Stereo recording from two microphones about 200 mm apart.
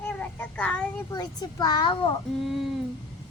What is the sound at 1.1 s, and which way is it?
A child's voice, 20° left (ahead or behind).